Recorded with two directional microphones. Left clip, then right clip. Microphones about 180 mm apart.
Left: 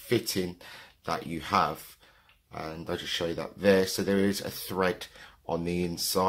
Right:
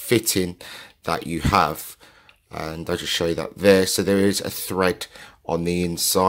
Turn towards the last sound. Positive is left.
turn(degrees=-35)  # may be behind; listen again after turning